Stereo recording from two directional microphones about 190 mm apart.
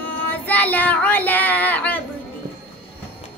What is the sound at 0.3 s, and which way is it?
Child singing, 10° left (ahead or behind).